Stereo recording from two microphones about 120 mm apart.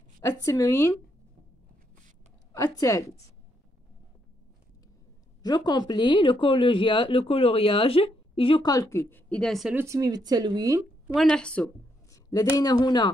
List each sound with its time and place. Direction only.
0.3 s speech: 25° left (ahead or behind)
2.5 s speech: 30° left (ahead or behind)
5.4 s speech: 35° left (ahead or behind)
8.6 s speech: 30° left (ahead or behind)
9.3 s a woman's voice: 5° left (ahead or behind)
9.8 s speech: 30° right (ahead or behind)
11.1 s a woman's voice: 5° left (ahead or behind)
12.1 s speech: 25° left (ahead or behind)